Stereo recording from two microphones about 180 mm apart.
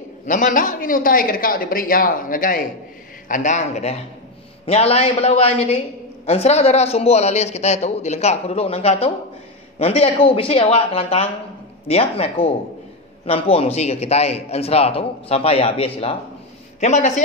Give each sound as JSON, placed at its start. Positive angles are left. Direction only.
{"t": 0.3, "sound": "a man's voice", "side_deg": 50}